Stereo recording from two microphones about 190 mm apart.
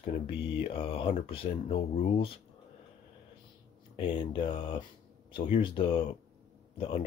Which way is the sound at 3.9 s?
25° left (ahead or behind).